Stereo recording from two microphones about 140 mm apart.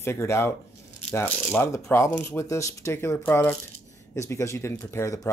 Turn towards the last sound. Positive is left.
turn(degrees=20)  # may be behind; listen again after turning